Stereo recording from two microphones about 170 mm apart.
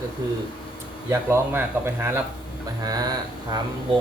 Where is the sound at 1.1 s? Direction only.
15° right (ahead or behind).